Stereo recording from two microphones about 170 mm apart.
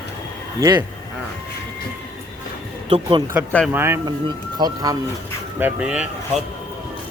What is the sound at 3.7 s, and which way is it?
A man's voice, 15° right (ahead or behind).